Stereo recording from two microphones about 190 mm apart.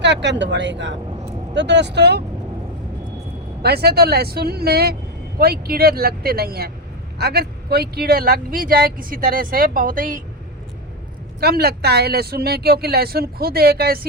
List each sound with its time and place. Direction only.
0.0 s speech: 65° right (ahead or behind)
3.6 s speech: 60° right (ahead or behind)
11.3 s speech: 55° right (ahead or behind)